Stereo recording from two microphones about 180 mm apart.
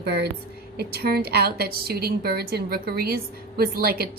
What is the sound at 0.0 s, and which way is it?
A woman's voice, 60° right (ahead or behind).